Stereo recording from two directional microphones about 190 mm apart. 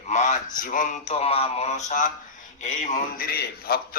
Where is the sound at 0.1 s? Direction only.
40° left (ahead or behind).